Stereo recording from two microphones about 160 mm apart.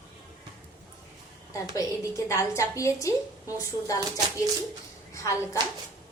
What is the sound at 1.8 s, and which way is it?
A woman's voice, 20° left (ahead or behind).